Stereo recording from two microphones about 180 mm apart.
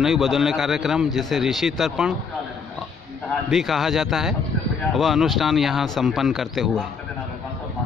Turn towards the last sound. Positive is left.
turn(degrees=0)  # may be behind; listen again after turning